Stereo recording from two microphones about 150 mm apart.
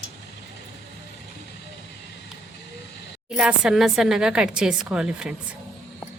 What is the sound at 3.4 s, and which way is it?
Speech, 5° right (ahead or behind).